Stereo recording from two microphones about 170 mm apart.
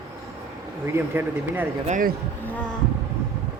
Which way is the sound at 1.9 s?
55° right (ahead or behind).